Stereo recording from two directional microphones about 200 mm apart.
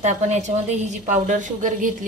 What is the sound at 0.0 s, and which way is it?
A woman's voice, 35° right (ahead or behind).